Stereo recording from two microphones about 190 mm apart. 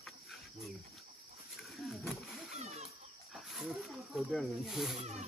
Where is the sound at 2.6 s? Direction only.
35° right (ahead or behind).